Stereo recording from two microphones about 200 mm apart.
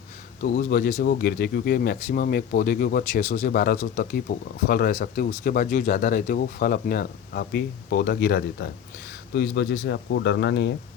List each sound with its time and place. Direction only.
0.4 s speech: 45° left (ahead or behind)